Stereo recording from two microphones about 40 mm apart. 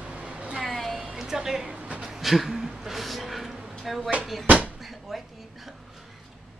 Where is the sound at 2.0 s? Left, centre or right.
Centre.